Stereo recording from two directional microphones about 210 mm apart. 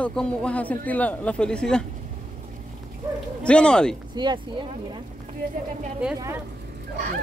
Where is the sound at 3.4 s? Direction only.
5° left (ahead or behind).